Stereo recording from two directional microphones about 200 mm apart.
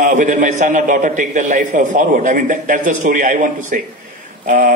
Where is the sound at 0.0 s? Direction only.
40° right (ahead or behind).